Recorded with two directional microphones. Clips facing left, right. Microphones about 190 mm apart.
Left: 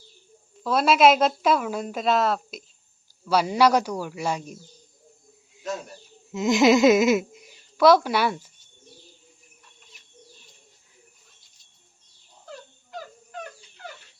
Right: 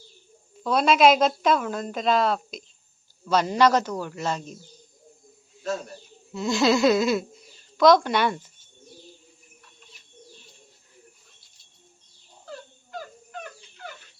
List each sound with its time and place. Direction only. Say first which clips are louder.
0.6 s a man's voice: even; 5° left (ahead or behind)
6.3 s speech: left 4 dB; 20° left (ahead or behind)